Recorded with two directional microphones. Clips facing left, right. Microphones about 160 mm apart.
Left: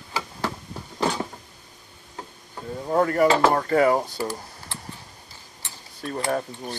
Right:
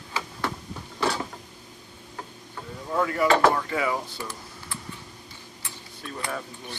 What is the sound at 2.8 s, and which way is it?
Speech, 40° left (ahead or behind).